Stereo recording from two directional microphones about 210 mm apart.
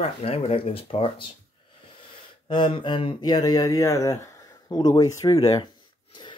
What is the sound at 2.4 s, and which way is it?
Speech, 25° left (ahead or behind).